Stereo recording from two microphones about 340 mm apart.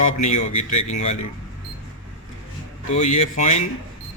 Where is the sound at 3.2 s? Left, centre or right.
Centre.